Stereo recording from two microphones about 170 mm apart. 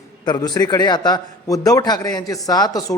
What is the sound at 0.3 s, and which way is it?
A man's voice, 25° left (ahead or behind).